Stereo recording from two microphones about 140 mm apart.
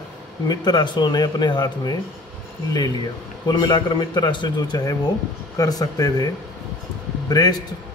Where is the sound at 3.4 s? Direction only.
30° left (ahead or behind).